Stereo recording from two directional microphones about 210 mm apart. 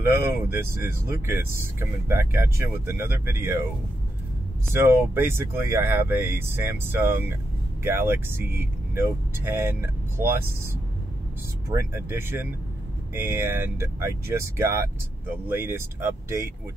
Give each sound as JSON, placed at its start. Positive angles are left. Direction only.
{"t": 0.0, "sound": "speech", "side_deg": -10}
{"t": 4.7, "sound": "speech", "side_deg": -10}
{"t": 11.7, "sound": "speech", "side_deg": -10}